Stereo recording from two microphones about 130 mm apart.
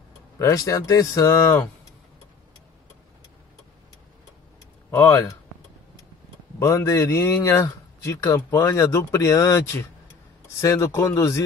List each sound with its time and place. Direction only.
0.4 s speech: 25° left (ahead or behind)
4.9 s speech: 20° left (ahead or behind)
6.6 s speech: 20° left (ahead or behind)